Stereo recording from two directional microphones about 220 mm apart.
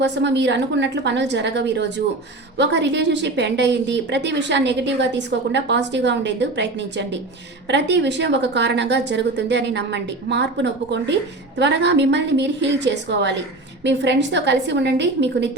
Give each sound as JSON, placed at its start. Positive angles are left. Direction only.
{"t": 0.0, "sound": "a woman's voice", "side_deg": -50}